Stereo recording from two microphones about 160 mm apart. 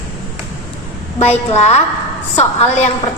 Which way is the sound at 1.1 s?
40° left (ahead or behind).